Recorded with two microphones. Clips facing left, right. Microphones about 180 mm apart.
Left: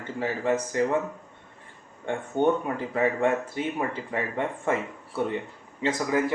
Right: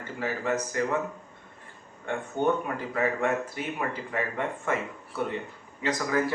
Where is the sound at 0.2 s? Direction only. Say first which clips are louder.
Left 3 dB; 30° left (ahead or behind).